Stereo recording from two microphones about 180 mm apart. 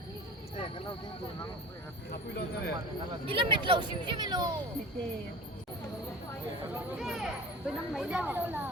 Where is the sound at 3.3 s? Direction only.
30° right (ahead or behind).